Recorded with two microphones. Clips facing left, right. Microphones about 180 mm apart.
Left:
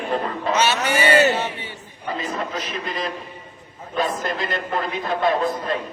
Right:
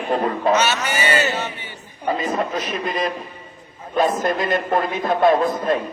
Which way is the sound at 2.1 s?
45° right (ahead or behind).